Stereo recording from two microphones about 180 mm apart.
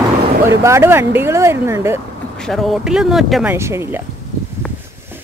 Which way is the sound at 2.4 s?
Centre (ahead or behind).